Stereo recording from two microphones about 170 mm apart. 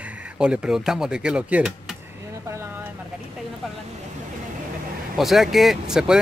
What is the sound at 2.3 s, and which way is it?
Vehicle, 15° right (ahead or behind).